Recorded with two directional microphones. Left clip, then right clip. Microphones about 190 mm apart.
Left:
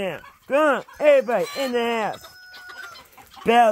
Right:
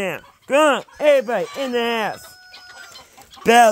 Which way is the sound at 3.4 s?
15° right (ahead or behind).